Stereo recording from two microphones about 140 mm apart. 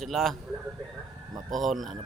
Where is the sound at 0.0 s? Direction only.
Centre (ahead or behind).